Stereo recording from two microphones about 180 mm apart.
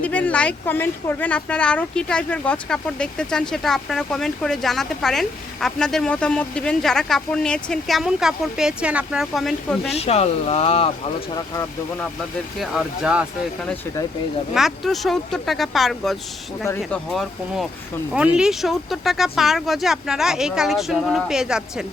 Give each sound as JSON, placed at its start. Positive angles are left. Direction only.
{"t": 0.0, "sound": "speech", "side_deg": 10}
{"t": 10.0, "sound": "speech", "side_deg": 35}
{"t": 12.5, "sound": "speech", "side_deg": -5}
{"t": 14.5, "sound": "speech", "side_deg": 0}